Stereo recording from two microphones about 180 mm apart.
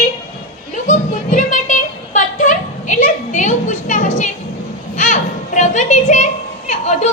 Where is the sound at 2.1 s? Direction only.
45° left (ahead or behind).